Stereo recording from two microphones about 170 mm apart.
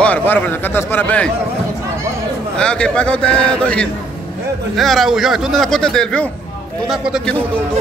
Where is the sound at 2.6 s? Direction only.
5° left (ahead or behind).